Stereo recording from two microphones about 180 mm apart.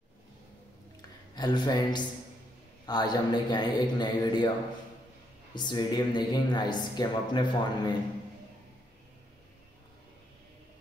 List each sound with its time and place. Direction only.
1.3 s speech: 25° left (ahead or behind)
5.5 s speech: 25° left (ahead or behind)